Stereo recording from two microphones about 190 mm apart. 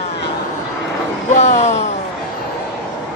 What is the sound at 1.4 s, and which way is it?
Speech, 35° left (ahead or behind).